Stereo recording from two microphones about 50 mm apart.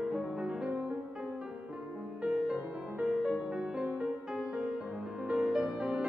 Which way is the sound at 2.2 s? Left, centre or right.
Centre.